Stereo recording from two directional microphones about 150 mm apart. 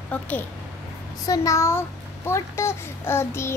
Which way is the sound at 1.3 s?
20° left (ahead or behind).